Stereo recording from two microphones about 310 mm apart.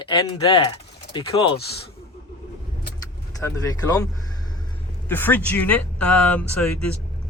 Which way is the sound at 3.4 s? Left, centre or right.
Centre.